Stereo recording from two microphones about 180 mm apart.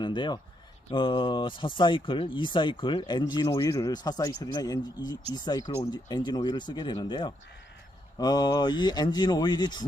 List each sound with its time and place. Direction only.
0.0 s speech: 25° left (ahead or behind)